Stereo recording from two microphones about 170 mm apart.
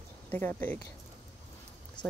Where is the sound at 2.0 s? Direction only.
25° left (ahead or behind).